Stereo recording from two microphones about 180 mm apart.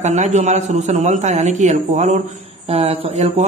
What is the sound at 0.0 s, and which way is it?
A man's voice, 40° right (ahead or behind).